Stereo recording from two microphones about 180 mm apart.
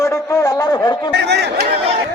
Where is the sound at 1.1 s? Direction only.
70° right (ahead or behind).